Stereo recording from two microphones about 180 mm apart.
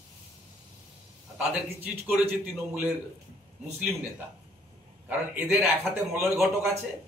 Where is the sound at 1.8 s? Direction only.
10° right (ahead or behind).